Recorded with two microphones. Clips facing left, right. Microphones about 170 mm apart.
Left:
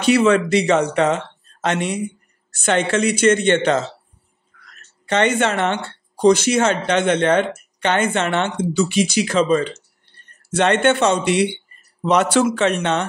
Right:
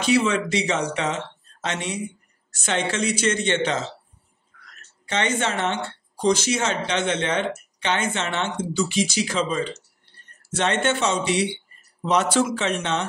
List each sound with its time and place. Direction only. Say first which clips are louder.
0.0 s speech: left 6 dB; 60° left (ahead or behind)
5.0 s speech: left 7 dB; 60° left (ahead or behind)